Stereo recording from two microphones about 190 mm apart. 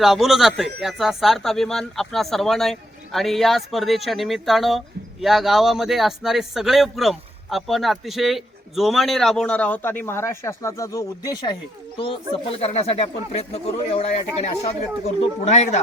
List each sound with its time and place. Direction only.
0.0 s a man's voice: centre (ahead or behind); by 15.8 s 35° left (ahead or behind)